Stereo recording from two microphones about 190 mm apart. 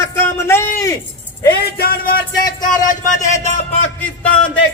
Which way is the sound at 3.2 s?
40° left (ahead or behind).